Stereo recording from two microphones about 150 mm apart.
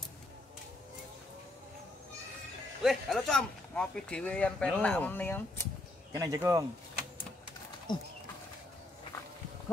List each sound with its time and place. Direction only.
2.8 s speech: centre (ahead or behind)
6.1 s speech: 20° right (ahead or behind)
7.9 s speech: 30° left (ahead or behind)